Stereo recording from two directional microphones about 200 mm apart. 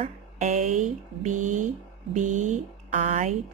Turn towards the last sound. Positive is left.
turn(degrees=-40)  # may be behind; listen again after turning